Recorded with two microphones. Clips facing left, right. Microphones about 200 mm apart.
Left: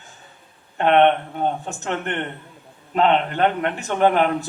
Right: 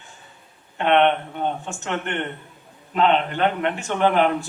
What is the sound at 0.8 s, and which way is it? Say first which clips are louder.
A man's voice: left 2 dB; 40° left (ahead or behind).